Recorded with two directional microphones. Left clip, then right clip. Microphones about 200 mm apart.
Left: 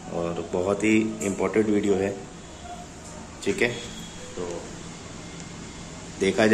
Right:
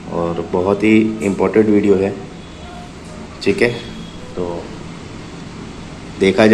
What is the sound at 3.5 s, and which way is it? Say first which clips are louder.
Speech: right 9 dB; 5° right (ahead or behind).